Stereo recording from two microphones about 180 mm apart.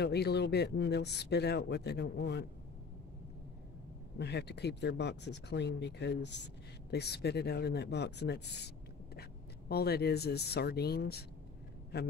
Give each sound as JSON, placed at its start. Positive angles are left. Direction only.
{"t": 0.0, "sound": "speech", "side_deg": 65}
{"t": 4.2, "sound": "speech", "side_deg": 65}